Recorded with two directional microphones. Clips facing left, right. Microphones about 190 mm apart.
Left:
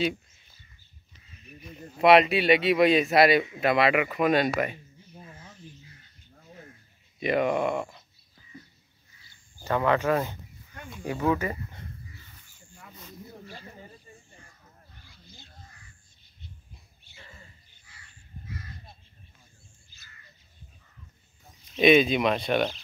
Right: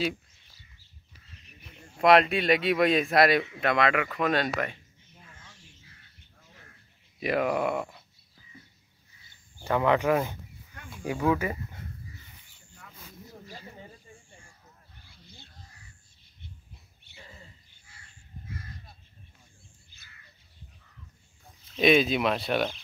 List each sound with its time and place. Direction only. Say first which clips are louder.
1.6 s speech: left 2 dB; 5° left (ahead or behind)
5.1 s a sound: left 7 dB; 35° left (ahead or behind)
7.2 s speech: left 2 dB; centre (ahead or behind)
9.7 s speech: even; 15° right (ahead or behind)
11.2 s speech: even; 10° right (ahead or behind)
21.7 s speech: left 3 dB; centre (ahead or behind)